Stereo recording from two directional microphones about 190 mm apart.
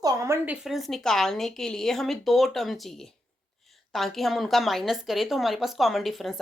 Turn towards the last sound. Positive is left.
turn(degrees=0)  # may be behind; listen again after turning